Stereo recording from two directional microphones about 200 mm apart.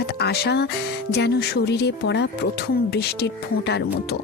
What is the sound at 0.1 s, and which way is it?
Speech, 55° left (ahead or behind).